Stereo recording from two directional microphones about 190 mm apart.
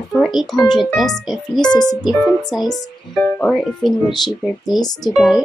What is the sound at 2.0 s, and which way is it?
Speech, centre (ahead or behind).